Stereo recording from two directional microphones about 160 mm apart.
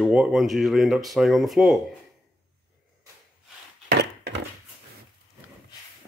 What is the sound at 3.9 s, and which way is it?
Wood, 90° right.